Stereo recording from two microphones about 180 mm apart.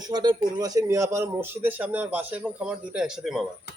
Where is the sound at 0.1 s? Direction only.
25° right (ahead or behind); by 3.4 s 5° right (ahead or behind).